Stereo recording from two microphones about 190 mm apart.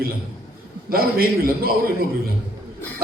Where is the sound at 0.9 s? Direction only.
50° right (ahead or behind).